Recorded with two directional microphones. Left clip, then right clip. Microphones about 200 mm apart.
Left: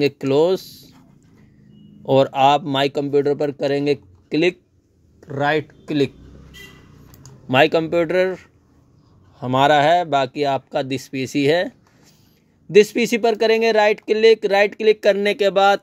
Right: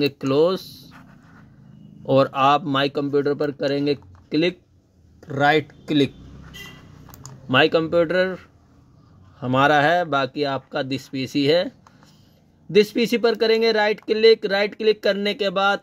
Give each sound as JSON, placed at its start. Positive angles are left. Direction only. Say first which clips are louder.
{"t": 0.0, "sound": "speech", "louder": "left 2 dB", "side_deg": 25}
{"t": 2.0, "sound": "speech", "louder": "left 2 dB", "side_deg": 20}
{"t": 5.2, "sound": "speech", "louder": "right 2 dB", "side_deg": 10}
{"t": 7.4, "sound": "speech", "louder": "left 2 dB", "side_deg": 30}
{"t": 12.7, "sound": "speech", "louder": "left 4 dB", "side_deg": 25}